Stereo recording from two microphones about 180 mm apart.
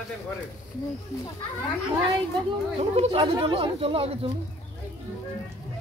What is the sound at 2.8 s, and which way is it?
Speech, 35° right (ahead or behind).